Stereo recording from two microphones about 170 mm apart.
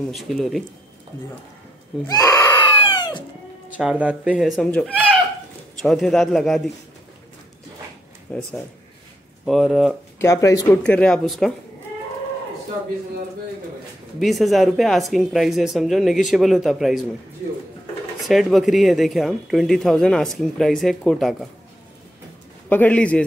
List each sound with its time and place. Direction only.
0.1 s speech: centre (ahead or behind)
2.0 s screaming: 20° left (ahead or behind)
2.8 s chicken: 25° left (ahead or behind)
3.7 s speech: 10° right (ahead or behind)
8.3 s speech: 10° left (ahead or behind)
9.5 s speech: centre (ahead or behind)
10.1 s speech: 15° left (ahead or behind)
10.8 s speech: 5° left (ahead or behind)
14.2 s speech: centre (ahead or behind)
18.3 s speech: centre (ahead or behind)
22.7 s speech: 10° left (ahead or behind)